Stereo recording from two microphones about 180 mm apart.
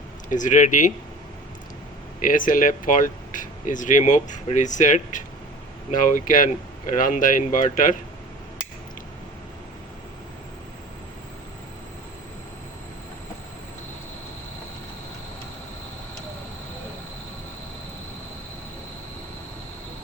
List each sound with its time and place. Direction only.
0.3 s speech: 45° left (ahead or behind)
2.2 s speech: 50° left (ahead or behind)